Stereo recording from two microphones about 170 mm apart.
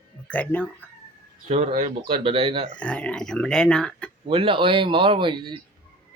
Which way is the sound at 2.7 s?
5° left (ahead or behind).